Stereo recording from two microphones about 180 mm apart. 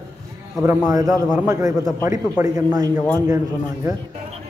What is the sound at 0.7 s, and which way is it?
A man's voice, 20° right (ahead or behind).